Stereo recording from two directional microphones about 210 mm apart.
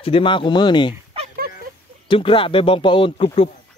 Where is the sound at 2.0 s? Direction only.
25° left (ahead or behind).